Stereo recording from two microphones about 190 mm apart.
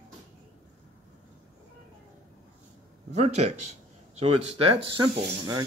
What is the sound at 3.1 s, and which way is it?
Speech, 35° right (ahead or behind).